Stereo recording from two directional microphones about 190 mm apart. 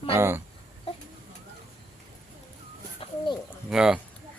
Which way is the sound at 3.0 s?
30° left (ahead or behind).